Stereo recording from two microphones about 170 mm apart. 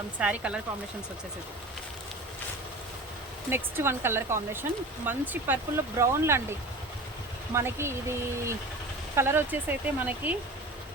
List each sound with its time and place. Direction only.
0.2 s speech: 5° right (ahead or behind)
3.5 s speech: 15° right (ahead or behind)
7.5 s speech: 15° right (ahead or behind)